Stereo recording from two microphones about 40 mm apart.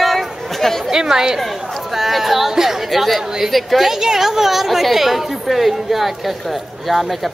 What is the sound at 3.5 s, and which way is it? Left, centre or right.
A woman's voice, centre.